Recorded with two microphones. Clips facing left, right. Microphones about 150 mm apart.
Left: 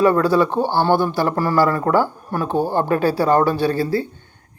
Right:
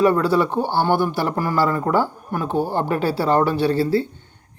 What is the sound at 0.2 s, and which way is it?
Speech, 20° right (ahead or behind).